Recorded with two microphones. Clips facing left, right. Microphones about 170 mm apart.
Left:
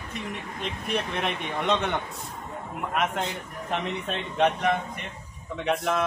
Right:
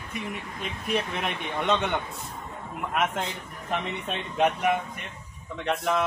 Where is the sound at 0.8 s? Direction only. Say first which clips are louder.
Even; centre (ahead or behind).